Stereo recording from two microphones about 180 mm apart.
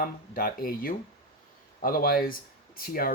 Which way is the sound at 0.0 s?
50° left (ahead or behind).